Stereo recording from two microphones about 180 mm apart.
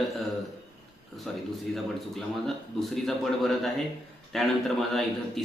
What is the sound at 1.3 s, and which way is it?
Speech, centre (ahead or behind).